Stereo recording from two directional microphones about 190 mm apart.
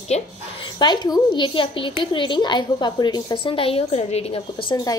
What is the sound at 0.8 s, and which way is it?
A woman's voice, 20° left (ahead or behind).